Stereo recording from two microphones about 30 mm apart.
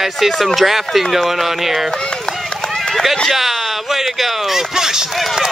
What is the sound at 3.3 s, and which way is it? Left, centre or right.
Music, centre.